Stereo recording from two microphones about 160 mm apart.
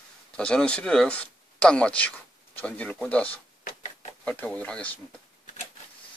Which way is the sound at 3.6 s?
45° left (ahead or behind).